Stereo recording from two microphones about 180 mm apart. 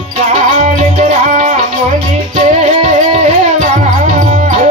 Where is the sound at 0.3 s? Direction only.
40° right (ahead or behind).